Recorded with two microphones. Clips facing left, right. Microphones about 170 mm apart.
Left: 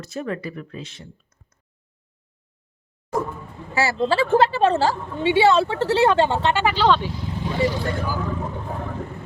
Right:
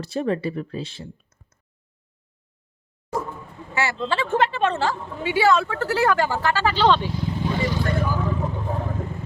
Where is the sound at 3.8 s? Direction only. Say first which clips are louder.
Left 4 dB; 35° left (ahead or behind).